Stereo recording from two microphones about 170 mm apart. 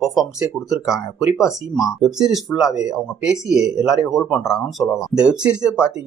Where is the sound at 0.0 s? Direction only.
Centre (ahead or behind).